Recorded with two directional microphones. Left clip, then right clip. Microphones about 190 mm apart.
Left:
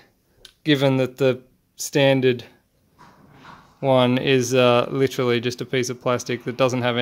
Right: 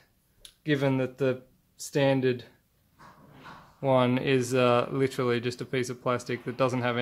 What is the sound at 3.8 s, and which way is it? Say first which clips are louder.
Speech: left 6 dB; 25° left (ahead or behind).